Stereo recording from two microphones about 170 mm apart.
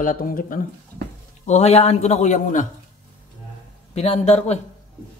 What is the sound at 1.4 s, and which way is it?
A man's voice, 40° left (ahead or behind).